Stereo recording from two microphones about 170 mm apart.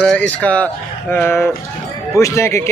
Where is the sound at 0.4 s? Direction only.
5° left (ahead or behind).